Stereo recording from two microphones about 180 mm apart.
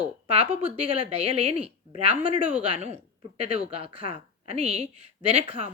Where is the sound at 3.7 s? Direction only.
30° right (ahead or behind).